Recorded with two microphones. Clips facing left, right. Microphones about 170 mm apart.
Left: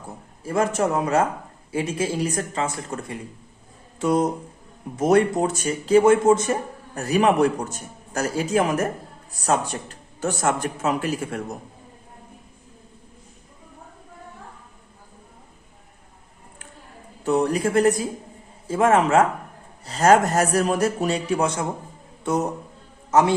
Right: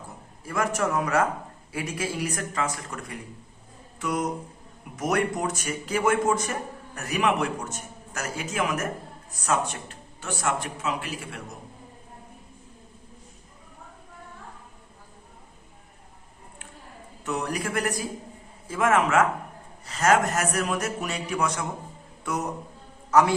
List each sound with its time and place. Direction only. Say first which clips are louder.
0.4 s speech: left 5 dB; 25° left (ahead or behind)
10.2 s a man's voice: left 6 dB; 45° left (ahead or behind)
17.2 s speech: left 9 dB; 30° left (ahead or behind)